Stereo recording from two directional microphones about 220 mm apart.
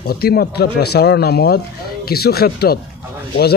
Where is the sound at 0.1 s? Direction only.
45° left (ahead or behind).